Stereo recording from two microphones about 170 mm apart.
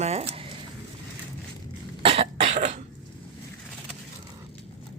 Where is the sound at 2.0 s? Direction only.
35° right (ahead or behind).